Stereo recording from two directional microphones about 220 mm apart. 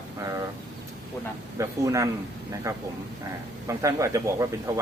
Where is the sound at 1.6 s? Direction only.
15° right (ahead or behind).